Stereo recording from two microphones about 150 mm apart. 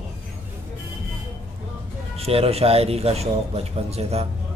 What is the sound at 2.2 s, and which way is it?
A man's voice, 40° right (ahead or behind).